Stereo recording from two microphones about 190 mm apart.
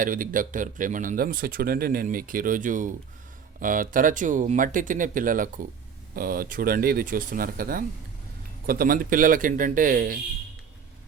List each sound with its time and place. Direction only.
0.0 s speech: 45° right (ahead or behind)